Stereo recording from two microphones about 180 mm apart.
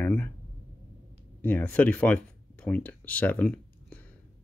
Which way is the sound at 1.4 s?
10° left (ahead or behind).